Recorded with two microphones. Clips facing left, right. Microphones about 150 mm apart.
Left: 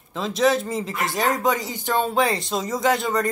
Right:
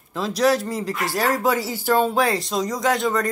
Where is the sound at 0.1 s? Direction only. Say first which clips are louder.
Right 1 dB; centre (ahead or behind).